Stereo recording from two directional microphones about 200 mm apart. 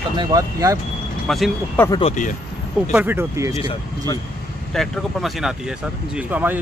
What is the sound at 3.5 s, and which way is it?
Speech, 20° left (ahead or behind).